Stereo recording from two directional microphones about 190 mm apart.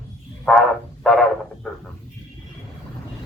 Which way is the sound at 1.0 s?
Centre (ahead or behind).